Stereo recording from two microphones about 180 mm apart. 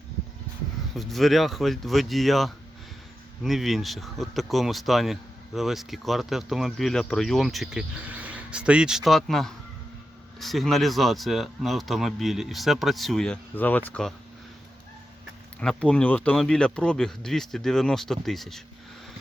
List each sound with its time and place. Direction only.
0.9 s speech: centre (ahead or behind)
15.6 s speech: 5° left (ahead or behind)